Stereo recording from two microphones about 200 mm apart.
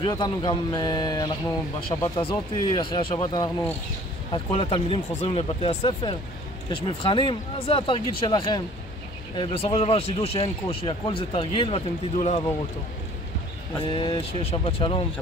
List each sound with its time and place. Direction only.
0.0 s speech: 20° left (ahead or behind)
13.9 s speech: 25° left (ahead or behind)